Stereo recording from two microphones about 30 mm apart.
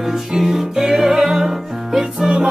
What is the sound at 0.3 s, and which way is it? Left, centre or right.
Music, centre.